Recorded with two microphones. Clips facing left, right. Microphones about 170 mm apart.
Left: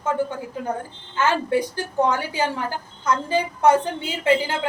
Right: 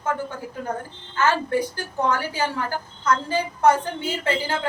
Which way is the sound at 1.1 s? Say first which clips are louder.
Left 1 dB; 15° left (ahead or behind).